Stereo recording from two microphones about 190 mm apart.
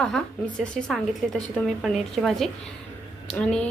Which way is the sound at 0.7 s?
5° left (ahead or behind).